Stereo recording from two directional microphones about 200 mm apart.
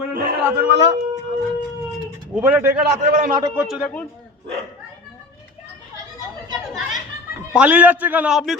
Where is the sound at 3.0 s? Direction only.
40° right (ahead or behind).